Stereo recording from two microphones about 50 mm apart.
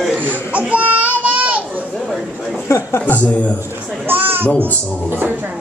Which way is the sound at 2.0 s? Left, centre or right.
Centre.